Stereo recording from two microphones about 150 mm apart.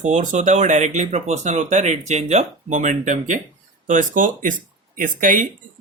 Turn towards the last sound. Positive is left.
turn(degrees=-60)  # may be behind; listen again after turning